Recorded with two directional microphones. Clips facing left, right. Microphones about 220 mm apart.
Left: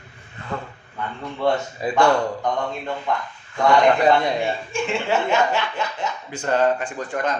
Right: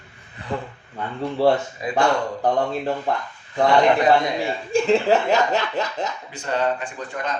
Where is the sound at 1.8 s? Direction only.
30° left (ahead or behind).